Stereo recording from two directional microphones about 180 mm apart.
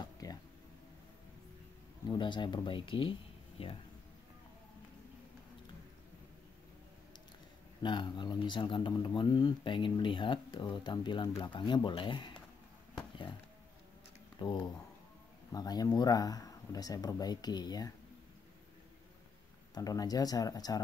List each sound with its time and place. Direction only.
0.0 s a sound: 20° left (ahead or behind)
2.0 s speech: 25° left (ahead or behind)
7.8 s speech: 25° left (ahead or behind)
14.4 s speech: 25° left (ahead or behind)
19.7 s speech: 20° left (ahead or behind)